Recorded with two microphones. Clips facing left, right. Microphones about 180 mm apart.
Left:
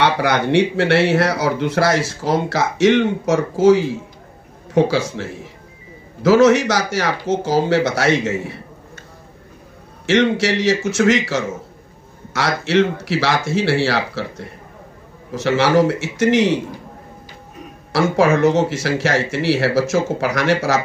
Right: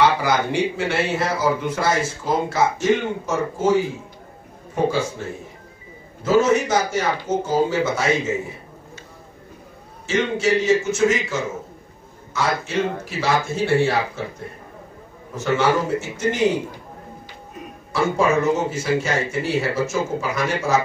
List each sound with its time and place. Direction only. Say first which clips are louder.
0.0 s speech: left 1 dB; 70° left (ahead or behind)
10.0 s speech: left 4 dB; 80° left
17.9 s speech: left 4 dB; 85° left